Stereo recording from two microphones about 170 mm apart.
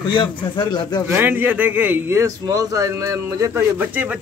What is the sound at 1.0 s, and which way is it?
A man's voice, 10° right (ahead or behind).